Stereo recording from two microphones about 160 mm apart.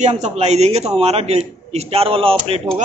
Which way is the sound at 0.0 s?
45° right (ahead or behind).